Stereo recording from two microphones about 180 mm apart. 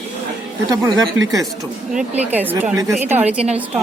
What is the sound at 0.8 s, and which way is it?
Speech, 20° right (ahead or behind).